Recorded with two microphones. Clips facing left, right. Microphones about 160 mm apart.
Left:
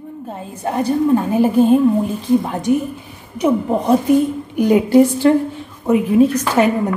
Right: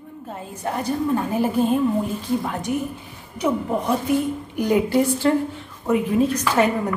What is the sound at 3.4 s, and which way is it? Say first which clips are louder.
A woman's voice: left 6 dB; 25° left (ahead or behind).